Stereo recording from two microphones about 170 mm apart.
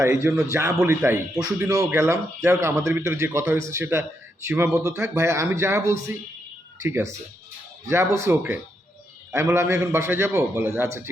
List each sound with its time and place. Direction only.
0.0 s speech: 15° right (ahead or behind)